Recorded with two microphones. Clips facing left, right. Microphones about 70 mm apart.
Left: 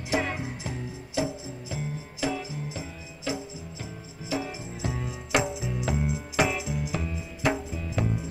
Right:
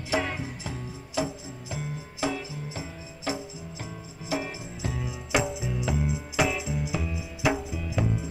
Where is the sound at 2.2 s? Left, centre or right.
Right.